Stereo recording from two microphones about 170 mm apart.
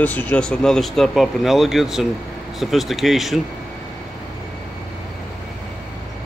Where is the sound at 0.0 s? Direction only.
10° left (ahead or behind).